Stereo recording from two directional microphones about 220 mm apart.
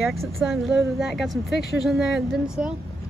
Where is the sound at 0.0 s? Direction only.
Centre (ahead or behind).